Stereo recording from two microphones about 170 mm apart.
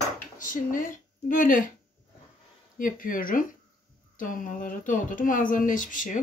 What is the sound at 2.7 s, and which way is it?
Speech, 55° left (ahead or behind).